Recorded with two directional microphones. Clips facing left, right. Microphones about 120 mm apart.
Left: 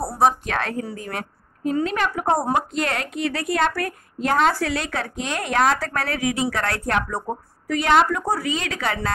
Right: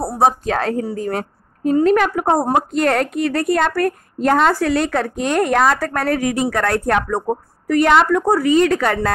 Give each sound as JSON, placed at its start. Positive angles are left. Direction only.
{"t": 0.0, "sound": "a woman's voice", "side_deg": -25}